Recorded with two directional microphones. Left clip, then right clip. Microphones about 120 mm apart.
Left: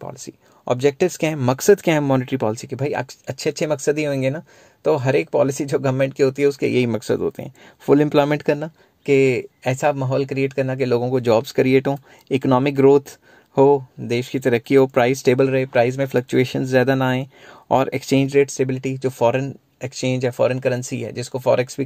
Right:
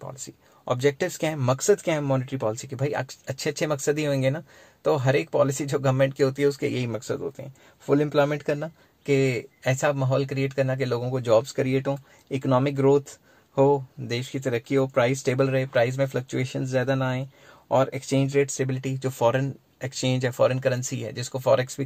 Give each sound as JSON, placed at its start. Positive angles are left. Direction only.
{"t": 0.2, "sound": "speech", "side_deg": 45}
{"t": 2.5, "sound": "speech", "side_deg": 40}
{"t": 6.7, "sound": "speech", "side_deg": 70}
{"t": 8.5, "sound": "speech", "side_deg": 45}
{"t": 13.6, "sound": "speech", "side_deg": 50}
{"t": 16.1, "sound": "speech", "side_deg": 70}